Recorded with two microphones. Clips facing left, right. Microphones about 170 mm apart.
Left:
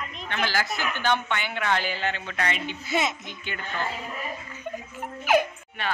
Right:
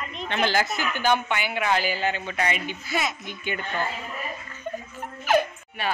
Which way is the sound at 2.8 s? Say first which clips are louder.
Left 3 dB; 25° left (ahead or behind).